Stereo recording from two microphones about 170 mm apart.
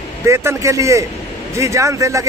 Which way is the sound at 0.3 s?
15° right (ahead or behind).